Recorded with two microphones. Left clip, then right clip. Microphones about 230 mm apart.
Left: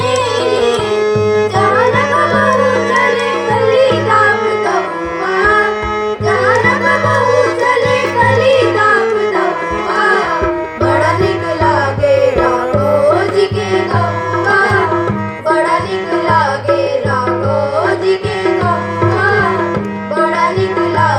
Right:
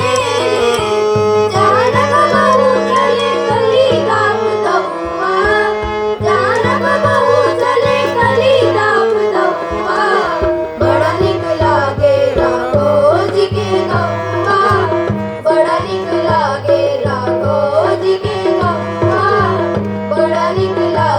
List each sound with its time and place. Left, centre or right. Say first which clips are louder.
0.1 s music: even; left
12.4 s music: even; left
19.0 s music: right 1 dB; left